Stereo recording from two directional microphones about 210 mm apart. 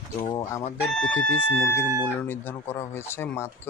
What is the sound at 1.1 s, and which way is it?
Speech, 65° left (ahead or behind).